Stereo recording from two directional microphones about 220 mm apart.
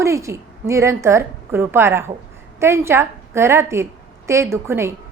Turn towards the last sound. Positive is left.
turn(degrees=-10)  # may be behind; listen again after turning